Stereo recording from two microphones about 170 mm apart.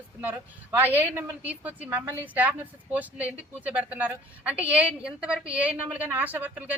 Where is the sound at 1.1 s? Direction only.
10° right (ahead or behind).